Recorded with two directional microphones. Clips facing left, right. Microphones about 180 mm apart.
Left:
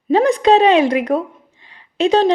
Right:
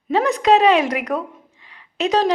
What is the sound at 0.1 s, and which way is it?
A woman's voice, 35° left (ahead or behind).